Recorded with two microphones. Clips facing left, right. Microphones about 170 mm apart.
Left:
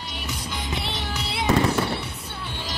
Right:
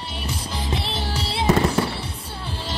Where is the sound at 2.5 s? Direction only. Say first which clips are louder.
Right 4 dB; 30° right (ahead or behind).